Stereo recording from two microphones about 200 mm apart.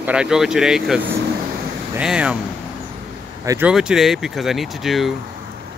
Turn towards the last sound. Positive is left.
turn(degrees=0)  # may be behind; listen again after turning